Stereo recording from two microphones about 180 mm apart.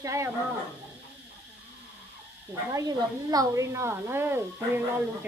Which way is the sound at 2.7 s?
20° right (ahead or behind).